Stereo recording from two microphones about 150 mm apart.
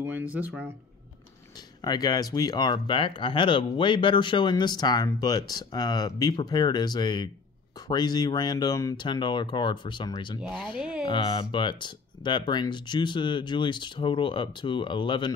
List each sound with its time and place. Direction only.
0.0 s speech: 10° right (ahead or behind)
1.8 s speech: 25° left (ahead or behind)